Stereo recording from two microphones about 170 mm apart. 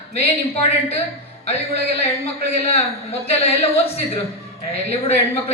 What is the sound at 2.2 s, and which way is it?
Speech, 35° left (ahead or behind).